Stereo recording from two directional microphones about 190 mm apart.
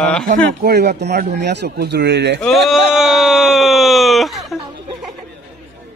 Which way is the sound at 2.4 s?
Centre (ahead or behind).